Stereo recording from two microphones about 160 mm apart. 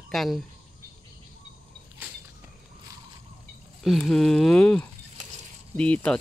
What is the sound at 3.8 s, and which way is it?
Speech, centre (ahead or behind).